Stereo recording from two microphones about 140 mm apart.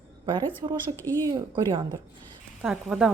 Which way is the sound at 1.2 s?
30° right (ahead or behind).